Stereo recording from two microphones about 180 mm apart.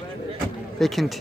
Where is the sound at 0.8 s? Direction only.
Centre (ahead or behind).